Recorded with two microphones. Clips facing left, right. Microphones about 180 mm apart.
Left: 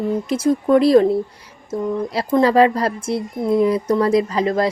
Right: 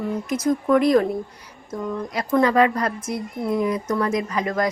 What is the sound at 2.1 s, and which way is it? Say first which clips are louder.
Speech: left 3 dB; 30° left (ahead or behind).